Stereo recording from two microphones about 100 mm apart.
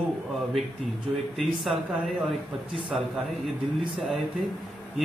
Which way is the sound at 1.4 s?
Centre (ahead or behind).